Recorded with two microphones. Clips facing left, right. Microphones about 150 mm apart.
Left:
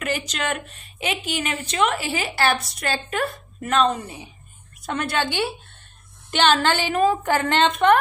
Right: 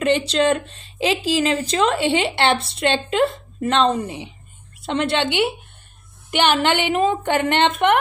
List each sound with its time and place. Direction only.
0.0 s a woman's voice: 30° right (ahead or behind)